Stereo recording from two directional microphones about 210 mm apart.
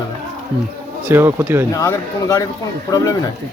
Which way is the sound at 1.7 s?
15° left (ahead or behind).